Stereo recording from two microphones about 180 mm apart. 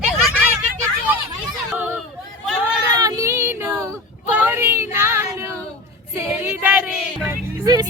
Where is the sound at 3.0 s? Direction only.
20° right (ahead or behind).